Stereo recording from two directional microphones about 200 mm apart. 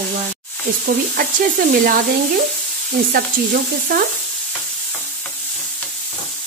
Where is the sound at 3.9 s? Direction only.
45° right (ahead or behind).